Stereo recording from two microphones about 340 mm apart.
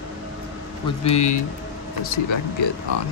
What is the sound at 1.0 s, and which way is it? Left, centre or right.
Speech, centre.